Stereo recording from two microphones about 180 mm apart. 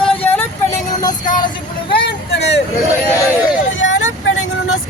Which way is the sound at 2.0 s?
70° left (ahead or behind).